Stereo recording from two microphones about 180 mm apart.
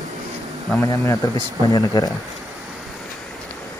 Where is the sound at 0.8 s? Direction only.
20° left (ahead or behind).